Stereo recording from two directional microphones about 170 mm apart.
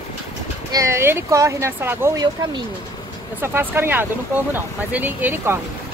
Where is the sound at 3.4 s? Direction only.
15° right (ahead or behind).